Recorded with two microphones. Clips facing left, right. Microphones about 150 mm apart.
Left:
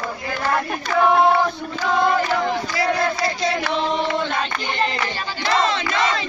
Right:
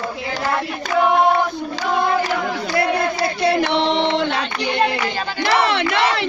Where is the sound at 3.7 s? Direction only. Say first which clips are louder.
Right 4 dB; 75° right (ahead or behind).